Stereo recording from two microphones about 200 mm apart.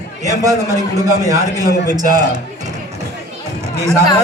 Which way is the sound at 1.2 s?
15° right (ahead or behind).